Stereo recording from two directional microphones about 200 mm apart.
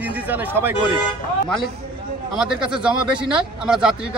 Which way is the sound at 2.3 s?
5° right (ahead or behind).